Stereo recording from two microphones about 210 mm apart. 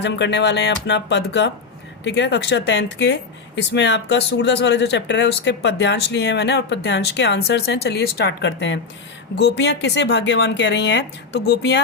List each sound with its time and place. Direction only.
0.0 s speech: 55° left (ahead or behind)